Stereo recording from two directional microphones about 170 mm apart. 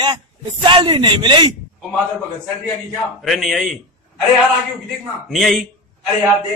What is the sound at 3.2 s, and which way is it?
Speech, centre (ahead or behind).